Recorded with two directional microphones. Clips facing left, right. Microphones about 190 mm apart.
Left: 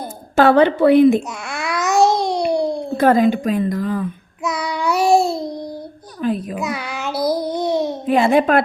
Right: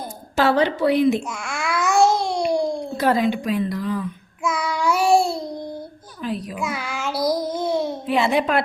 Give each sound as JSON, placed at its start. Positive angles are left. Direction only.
{"t": 0.3, "sound": "a child's voice", "side_deg": 55}
{"t": 1.5, "sound": "babbling", "side_deg": 20}
{"t": 3.0, "sound": "a child's voice", "side_deg": 50}
{"t": 4.6, "sound": "child singing", "side_deg": 15}
{"t": 6.2, "sound": "a child's voice", "side_deg": 50}
{"t": 6.6, "sound": "child singing", "side_deg": 20}
{"t": 7.3, "sound": "babbling", "side_deg": 15}
{"t": 8.0, "sound": "a child's voice", "side_deg": 50}